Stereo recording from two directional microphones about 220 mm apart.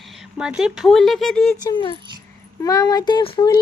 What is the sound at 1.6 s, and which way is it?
Speech, 20° left (ahead or behind).